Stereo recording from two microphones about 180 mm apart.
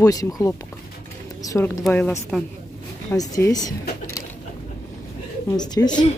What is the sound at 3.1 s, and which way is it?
Speech, 20° left (ahead or behind).